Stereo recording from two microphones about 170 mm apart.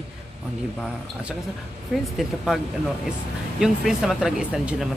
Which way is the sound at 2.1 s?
Centre (ahead or behind).